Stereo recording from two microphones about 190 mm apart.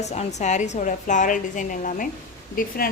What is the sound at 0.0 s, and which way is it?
A woman's voice, 35° left (ahead or behind).